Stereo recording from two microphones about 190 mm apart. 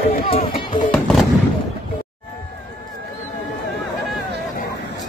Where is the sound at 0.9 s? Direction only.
Centre (ahead or behind).